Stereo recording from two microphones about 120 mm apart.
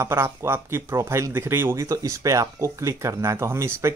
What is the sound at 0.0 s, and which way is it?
Speech, 20° right (ahead or behind).